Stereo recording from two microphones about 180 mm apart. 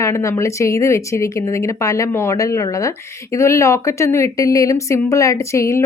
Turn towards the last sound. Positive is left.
turn(degrees=15)  # may be behind; listen again after turning